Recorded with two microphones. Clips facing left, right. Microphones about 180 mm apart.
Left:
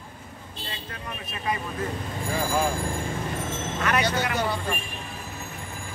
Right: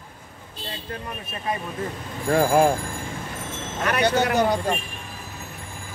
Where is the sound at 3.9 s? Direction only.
60° right (ahead or behind).